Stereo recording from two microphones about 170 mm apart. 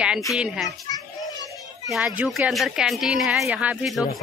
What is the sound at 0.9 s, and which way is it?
Children playing, 20° left (ahead or behind).